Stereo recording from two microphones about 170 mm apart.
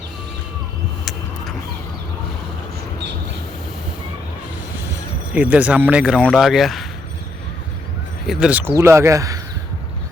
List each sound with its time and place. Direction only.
5.3 s speech: 10° right (ahead or behind)
8.3 s speech: 5° right (ahead or behind)